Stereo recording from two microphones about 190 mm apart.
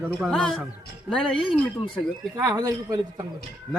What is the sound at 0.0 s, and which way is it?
A man's voice, centre (ahead or behind).